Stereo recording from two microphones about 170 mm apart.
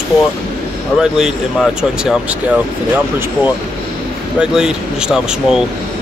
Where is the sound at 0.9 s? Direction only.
5° right (ahead or behind).